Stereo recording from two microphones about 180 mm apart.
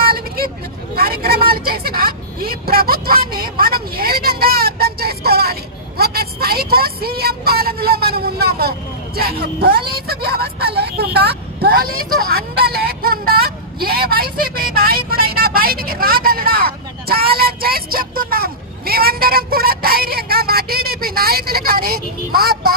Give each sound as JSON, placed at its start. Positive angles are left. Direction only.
{"t": 0.0, "sound": "vehicle", "side_deg": -55}
{"t": 0.9, "sound": "speech", "side_deg": -60}